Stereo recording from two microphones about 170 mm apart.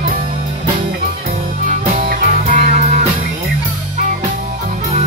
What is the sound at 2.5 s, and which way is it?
Music, 50° right (ahead or behind).